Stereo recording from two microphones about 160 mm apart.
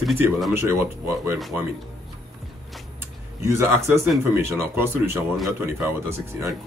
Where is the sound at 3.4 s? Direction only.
20° right (ahead or behind).